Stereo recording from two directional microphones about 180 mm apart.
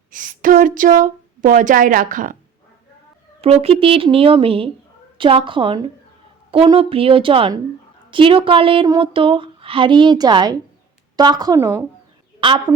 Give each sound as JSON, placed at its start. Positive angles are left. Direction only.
{"t": 0.1, "sound": "speech", "side_deg": -45}
{"t": 3.4, "sound": "speech", "side_deg": -35}
{"t": 12.4, "sound": "a woman's voice", "side_deg": -25}